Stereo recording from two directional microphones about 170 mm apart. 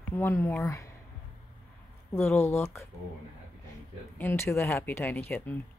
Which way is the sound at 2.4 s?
15° left (ahead or behind).